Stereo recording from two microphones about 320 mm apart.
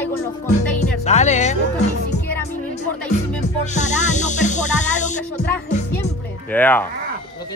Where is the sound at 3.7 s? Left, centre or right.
Left.